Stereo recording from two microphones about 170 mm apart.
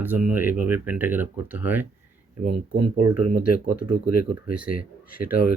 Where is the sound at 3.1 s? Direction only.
30° right (ahead or behind).